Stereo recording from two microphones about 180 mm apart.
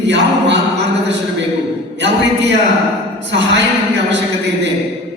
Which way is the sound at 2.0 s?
75° right (ahead or behind).